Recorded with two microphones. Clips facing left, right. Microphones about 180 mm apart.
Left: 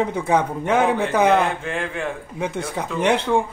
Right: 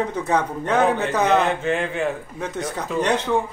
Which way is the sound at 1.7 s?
5° right (ahead or behind).